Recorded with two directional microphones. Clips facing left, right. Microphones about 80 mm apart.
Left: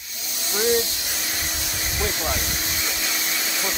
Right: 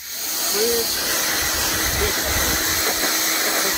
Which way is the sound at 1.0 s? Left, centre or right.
Right.